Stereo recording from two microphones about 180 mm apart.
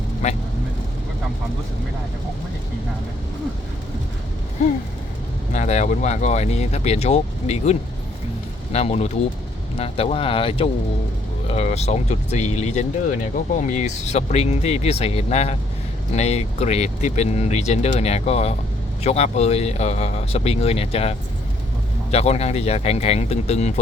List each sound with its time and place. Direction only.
0.2 s speech: 40° left (ahead or behind)
5.5 s speech: 40° left (ahead or behind)